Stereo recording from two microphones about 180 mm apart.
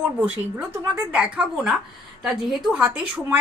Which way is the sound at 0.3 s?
10° right (ahead or behind).